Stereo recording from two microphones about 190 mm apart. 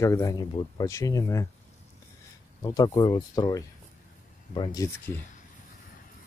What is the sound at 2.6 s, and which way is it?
Speech, 20° left (ahead or behind).